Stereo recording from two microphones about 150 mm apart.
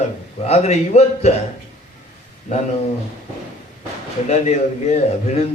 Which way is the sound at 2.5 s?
50° left (ahead or behind).